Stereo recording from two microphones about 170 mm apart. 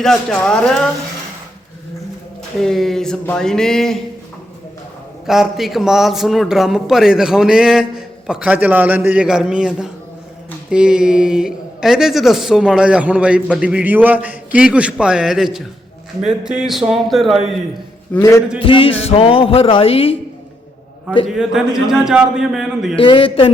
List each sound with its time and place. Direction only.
0.0 s a man's voice: centre (ahead or behind)
2.6 s a man's voice: centre (ahead or behind)
5.2 s a man's voice: centre (ahead or behind)
18.1 s a sound: 15° left (ahead or behind)
18.6 s speech: 30° left (ahead or behind)
21.2 s a man's voice: 5° right (ahead or behind)
23.0 s speech: 30° left (ahead or behind)